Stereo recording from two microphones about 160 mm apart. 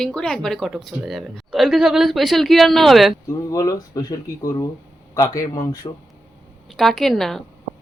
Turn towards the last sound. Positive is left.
turn(degrees=0)  # may be behind; listen again after turning